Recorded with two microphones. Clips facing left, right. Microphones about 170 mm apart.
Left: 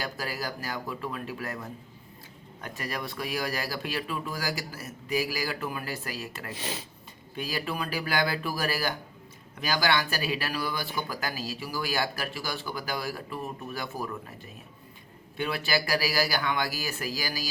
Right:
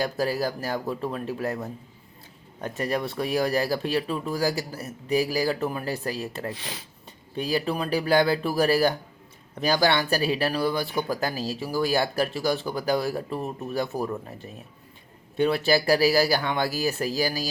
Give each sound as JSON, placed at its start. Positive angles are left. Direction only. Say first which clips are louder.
{"t": 0.0, "sound": "speech", "louder": "right 9 dB", "side_deg": -30}
{"t": 15.4, "sound": "speech", "louder": "right 8 dB", "side_deg": -30}